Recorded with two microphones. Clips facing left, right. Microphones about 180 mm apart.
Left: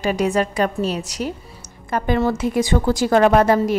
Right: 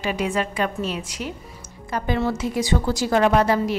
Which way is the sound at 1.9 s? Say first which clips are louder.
Left 4 dB; 55° left (ahead or behind).